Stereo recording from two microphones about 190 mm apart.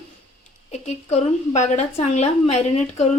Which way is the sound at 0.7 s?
35° left (ahead or behind).